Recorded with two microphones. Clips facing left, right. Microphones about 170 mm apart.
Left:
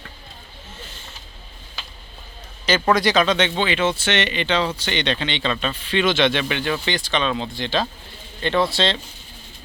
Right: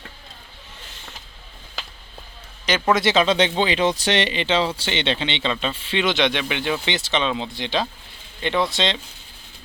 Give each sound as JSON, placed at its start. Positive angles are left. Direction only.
{"t": 2.6, "sound": "speech", "side_deg": -15}